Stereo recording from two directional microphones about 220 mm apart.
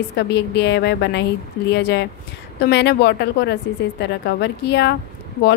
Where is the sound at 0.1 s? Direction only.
50° left (ahead or behind).